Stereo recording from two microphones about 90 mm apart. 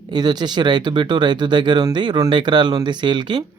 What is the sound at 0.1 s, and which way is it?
Speech, 50° right (ahead or behind).